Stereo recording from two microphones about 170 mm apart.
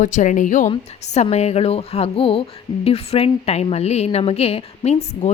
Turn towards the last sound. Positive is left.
turn(degrees=40)  # may be behind; listen again after turning